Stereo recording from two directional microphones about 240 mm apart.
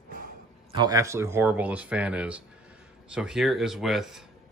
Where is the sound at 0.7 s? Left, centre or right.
Centre.